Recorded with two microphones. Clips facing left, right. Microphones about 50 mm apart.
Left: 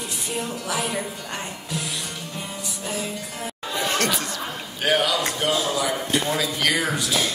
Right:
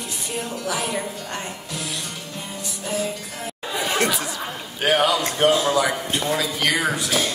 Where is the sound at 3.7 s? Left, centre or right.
Centre.